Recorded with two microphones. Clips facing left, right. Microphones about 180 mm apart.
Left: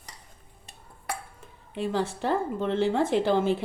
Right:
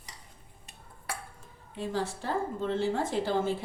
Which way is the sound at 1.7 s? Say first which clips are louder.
Left 4 dB; 70° left (ahead or behind).